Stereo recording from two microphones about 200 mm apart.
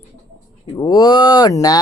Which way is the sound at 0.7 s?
20° left (ahead or behind).